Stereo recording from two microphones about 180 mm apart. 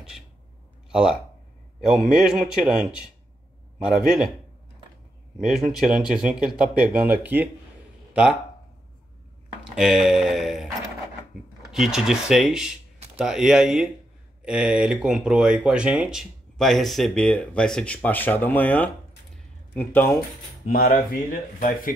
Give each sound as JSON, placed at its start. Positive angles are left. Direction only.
{"t": 0.9, "sound": "speech", "side_deg": -5}
{"t": 5.4, "sound": "speech", "side_deg": 0}
{"t": 9.8, "sound": "speech", "side_deg": 0}
{"t": 11.7, "sound": "speech", "side_deg": 0}
{"t": 19.3, "sound": "a sound", "side_deg": 10}
{"t": 20.7, "sound": "speech", "side_deg": 50}